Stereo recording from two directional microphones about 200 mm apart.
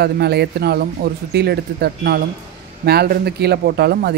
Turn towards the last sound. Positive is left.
turn(degrees=-55)  # may be behind; listen again after turning